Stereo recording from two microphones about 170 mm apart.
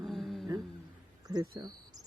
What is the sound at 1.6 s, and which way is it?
Speech, 20° right (ahead or behind).